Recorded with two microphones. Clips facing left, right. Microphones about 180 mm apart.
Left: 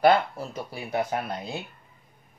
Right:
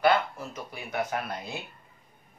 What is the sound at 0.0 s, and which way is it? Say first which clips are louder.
Speech: left 4 dB; 35° left (ahead or behind).